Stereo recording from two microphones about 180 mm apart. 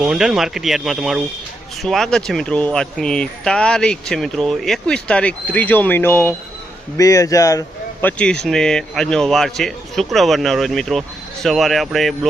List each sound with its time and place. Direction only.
0.0 s a man's voice: 5° right (ahead or behind); by 7.6 s 20° left (ahead or behind)
8.0 s speech: 5° left (ahead or behind)